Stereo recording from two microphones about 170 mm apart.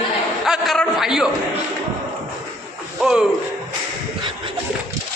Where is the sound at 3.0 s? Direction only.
5° right (ahead or behind).